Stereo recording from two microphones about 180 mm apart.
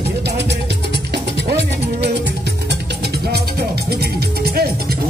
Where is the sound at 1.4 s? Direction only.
70° right (ahead or behind).